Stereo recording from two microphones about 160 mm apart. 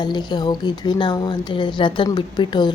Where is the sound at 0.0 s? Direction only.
30° left (ahead or behind).